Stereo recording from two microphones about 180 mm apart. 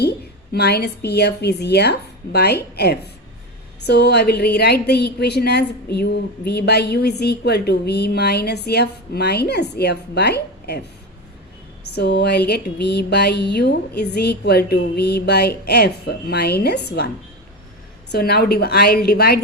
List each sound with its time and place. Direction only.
0.5 s a woman's voice: 65° left (ahead or behind)
11.9 s a woman's voice: 70° left (ahead or behind)
18.1 s a woman's voice: 60° left (ahead or behind)